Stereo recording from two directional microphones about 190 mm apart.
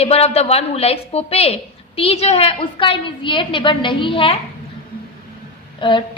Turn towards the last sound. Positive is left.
turn(degrees=25)  # may be behind; listen again after turning